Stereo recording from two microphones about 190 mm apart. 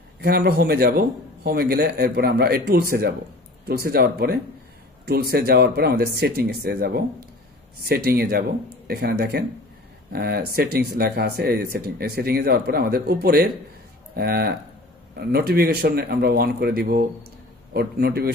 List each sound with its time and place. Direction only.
0.2 s speech: 55° right (ahead or behind)